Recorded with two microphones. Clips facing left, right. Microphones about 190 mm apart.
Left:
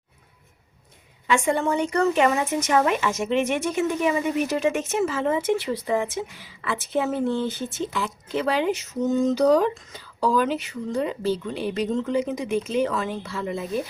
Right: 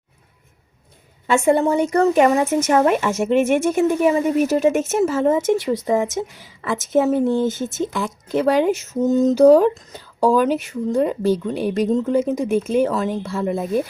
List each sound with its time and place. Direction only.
1.5 s speech: 40° right (ahead or behind)